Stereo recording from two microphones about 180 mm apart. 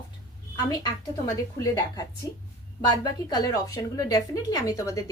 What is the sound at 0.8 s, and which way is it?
Speech, 20° left (ahead or behind).